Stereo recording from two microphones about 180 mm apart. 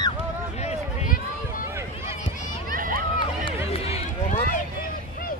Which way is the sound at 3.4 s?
35° left (ahead or behind).